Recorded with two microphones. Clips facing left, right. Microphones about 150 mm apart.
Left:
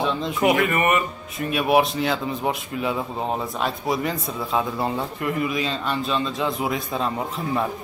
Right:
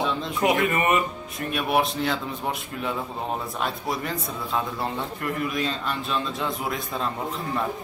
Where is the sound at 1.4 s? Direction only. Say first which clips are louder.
Left 5 dB; 5° left (ahead or behind).